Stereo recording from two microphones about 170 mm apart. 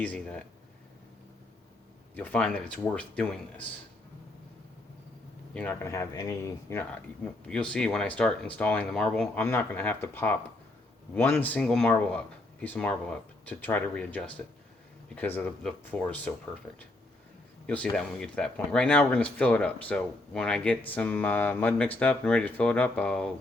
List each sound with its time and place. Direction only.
0.0 s speech: 5° left (ahead or behind)
2.1 s speech: 10° left (ahead or behind)
5.5 s speech: 10° left (ahead or behind)
7.4 s speech: 5° left (ahead or behind)
17.9 s speech: 5° left (ahead or behind)